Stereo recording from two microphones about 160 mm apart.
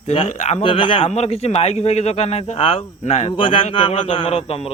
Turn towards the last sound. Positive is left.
turn(degrees=35)  # may be behind; listen again after turning